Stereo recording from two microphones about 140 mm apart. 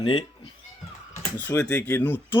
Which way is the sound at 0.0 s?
45° left (ahead or behind).